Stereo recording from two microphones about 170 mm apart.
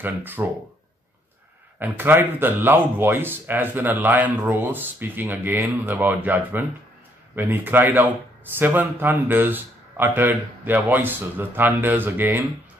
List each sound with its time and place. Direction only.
0.0 s speech: 10° right (ahead or behind)
1.8 s speech: 10° right (ahead or behind)